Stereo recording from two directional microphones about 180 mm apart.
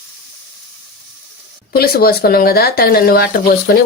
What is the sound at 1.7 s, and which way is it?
Speech, 60° left (ahead or behind).